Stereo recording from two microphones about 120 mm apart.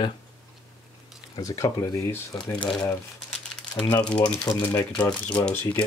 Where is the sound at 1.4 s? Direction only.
30° left (ahead or behind).